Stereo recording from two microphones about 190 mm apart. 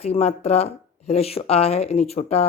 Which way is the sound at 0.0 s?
35° left (ahead or behind).